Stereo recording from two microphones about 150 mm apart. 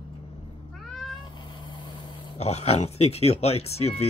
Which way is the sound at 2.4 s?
45° left (ahead or behind).